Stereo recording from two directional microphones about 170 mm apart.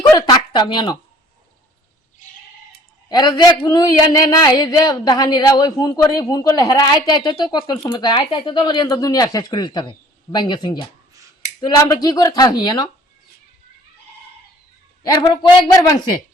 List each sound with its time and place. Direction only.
0.2 s speech: 30° left (ahead or behind)
3.1 s a woman's voice: 25° left (ahead or behind)
15.0 s a woman's voice: 25° left (ahead or behind)